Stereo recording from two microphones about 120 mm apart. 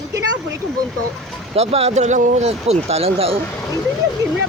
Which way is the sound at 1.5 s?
60° right (ahead or behind).